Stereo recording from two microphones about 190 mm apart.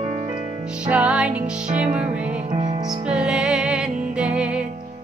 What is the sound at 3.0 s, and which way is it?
Music, 5° right (ahead or behind).